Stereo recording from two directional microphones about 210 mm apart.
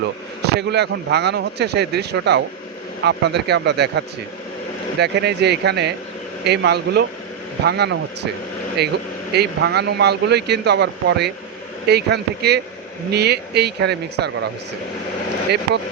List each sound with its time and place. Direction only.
0.4 s speech: 55° right (ahead or behind)